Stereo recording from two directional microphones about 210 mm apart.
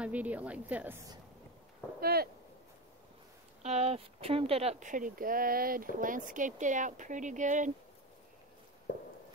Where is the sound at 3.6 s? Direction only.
30° right (ahead or behind).